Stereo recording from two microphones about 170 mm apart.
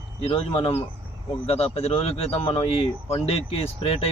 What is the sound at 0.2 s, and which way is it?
Speech, 35° left (ahead or behind).